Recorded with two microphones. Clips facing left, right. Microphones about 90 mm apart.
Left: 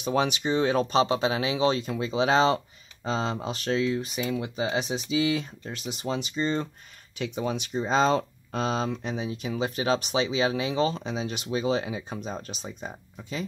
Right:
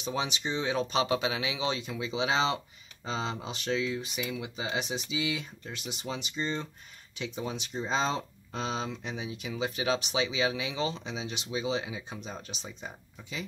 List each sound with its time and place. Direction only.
0.0 s speech: 55° left (ahead or behind)
0.9 s speech: 30° left (ahead or behind)
7.2 s speech: 65° left (ahead or behind); by 13.5 s 35° left (ahead or behind)